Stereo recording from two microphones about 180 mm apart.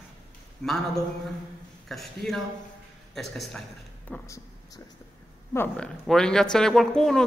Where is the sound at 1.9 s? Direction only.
Centre (ahead or behind).